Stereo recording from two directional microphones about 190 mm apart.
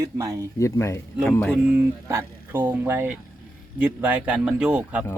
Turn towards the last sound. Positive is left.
turn(degrees=-5)  # may be behind; listen again after turning